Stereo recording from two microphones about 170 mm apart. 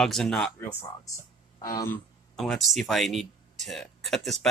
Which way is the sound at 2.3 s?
Centre (ahead or behind).